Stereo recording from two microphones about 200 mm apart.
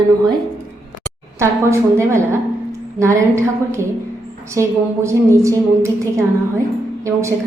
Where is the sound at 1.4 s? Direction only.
15° right (ahead or behind).